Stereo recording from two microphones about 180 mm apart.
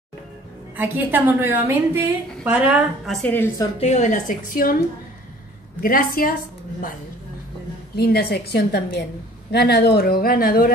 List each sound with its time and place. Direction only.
0.7 s a woman's voice: 10° right (ahead or behind); by 3.6 s 10° left (ahead or behind)
3.8 s a woman's voice: 40° left (ahead or behind)
5.8 s a woman's voice: 50° left (ahead or behind)
7.9 s speech: 60° left (ahead or behind)